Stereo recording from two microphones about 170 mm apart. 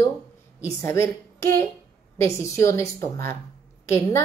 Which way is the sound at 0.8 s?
15° left (ahead or behind).